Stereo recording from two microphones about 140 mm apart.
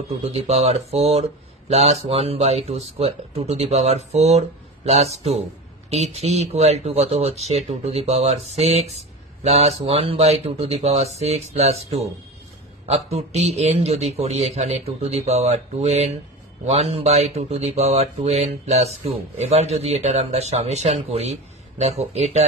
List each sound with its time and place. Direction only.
0.2 s speech: 45° right (ahead or behind)